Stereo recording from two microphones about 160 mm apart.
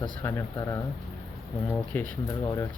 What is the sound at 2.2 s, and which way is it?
Speech, 25° left (ahead or behind).